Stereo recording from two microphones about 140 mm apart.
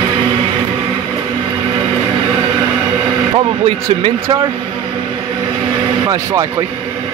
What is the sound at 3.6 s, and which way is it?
Speech, 40° right (ahead or behind).